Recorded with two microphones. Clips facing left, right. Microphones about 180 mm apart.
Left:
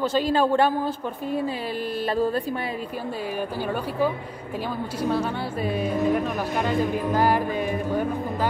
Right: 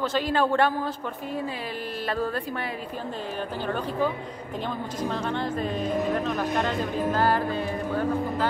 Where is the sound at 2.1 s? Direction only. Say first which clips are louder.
Left 4 dB; 25° left (ahead or behind).